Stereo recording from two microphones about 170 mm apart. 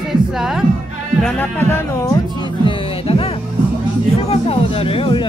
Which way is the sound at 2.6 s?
35° left (ahead or behind).